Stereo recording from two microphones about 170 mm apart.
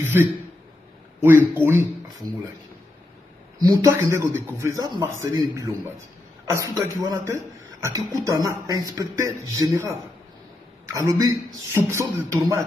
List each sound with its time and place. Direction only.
0.0 s a sound: 15° right (ahead or behind)
1.2 s a man's voice: 10° right (ahead or behind)
3.7 s a man's voice: 20° right (ahead or behind)